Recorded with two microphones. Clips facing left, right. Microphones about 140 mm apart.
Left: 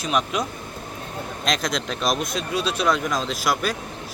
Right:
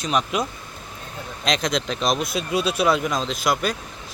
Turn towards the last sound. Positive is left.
turn(degrees=0)  # may be behind; listen again after turning